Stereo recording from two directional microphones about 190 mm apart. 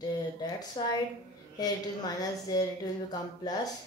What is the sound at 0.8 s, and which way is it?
Speech, 25° left (ahead or behind).